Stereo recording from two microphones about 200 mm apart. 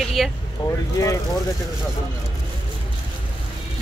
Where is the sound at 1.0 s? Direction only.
15° left (ahead or behind).